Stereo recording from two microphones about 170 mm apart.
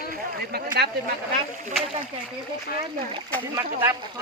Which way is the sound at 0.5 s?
70° right (ahead or behind).